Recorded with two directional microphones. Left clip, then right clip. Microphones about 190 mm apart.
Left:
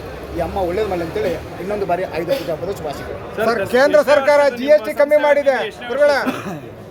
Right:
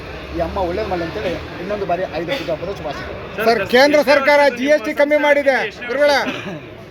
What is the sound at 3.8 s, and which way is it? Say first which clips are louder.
Speech: left 1 dB; 50° right (ahead or behind).